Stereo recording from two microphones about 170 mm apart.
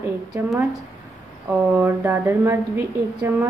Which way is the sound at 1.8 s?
10° right (ahead or behind).